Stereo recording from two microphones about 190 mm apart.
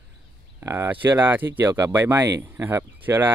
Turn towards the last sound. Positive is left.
turn(degrees=-10)  # may be behind; listen again after turning